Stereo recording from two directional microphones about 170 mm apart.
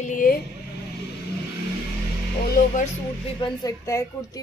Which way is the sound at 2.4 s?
60° left (ahead or behind).